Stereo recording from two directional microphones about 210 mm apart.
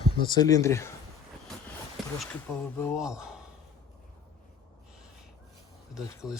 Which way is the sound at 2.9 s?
5° right (ahead or behind).